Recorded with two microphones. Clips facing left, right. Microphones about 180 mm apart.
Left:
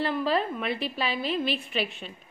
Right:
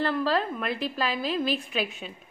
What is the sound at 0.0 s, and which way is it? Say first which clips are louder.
A woman's voice: even; 5° left (ahead or behind).